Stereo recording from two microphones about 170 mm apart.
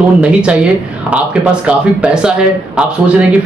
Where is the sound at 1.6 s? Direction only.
5° right (ahead or behind).